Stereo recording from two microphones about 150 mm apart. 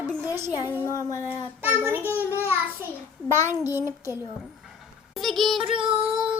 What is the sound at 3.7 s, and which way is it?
Speech, 15° right (ahead or behind).